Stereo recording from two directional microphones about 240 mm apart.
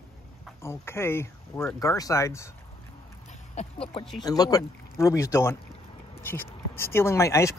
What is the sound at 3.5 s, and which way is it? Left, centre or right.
Speech, left.